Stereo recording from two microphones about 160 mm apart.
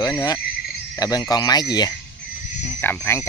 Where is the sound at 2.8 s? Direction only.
15° left (ahead or behind).